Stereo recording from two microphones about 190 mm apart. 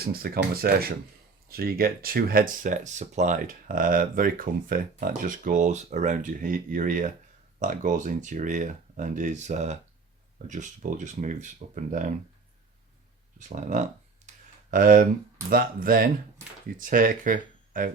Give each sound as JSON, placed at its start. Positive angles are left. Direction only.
{"t": 0.0, "sound": "speech", "side_deg": -50}
{"t": 13.6, "sound": "a sound", "side_deg": -40}
{"t": 15.4, "sound": "speech", "side_deg": -50}